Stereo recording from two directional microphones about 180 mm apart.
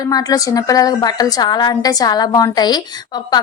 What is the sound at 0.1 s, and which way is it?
A woman's voice, 20° left (ahead or behind).